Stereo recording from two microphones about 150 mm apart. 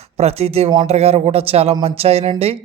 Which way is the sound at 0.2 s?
45° right (ahead or behind).